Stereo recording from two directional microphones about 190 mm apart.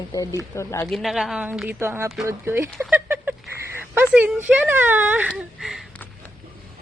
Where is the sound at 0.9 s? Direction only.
Centre (ahead or behind).